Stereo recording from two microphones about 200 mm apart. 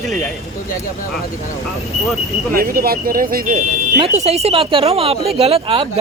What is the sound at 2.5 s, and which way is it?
Speech, 50° right (ahead or behind).